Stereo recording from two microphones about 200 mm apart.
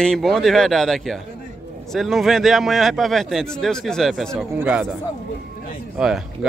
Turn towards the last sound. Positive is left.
turn(degrees=-5)  # may be behind; listen again after turning